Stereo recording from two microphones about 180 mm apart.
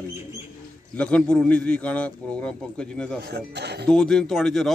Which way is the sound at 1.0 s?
5° left (ahead or behind).